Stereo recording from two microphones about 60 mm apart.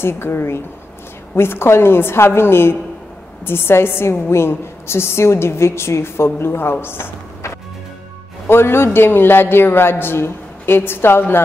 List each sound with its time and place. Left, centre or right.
0.0 s a woman's voice: left